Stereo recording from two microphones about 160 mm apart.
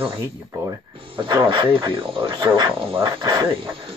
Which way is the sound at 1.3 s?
30° right (ahead or behind).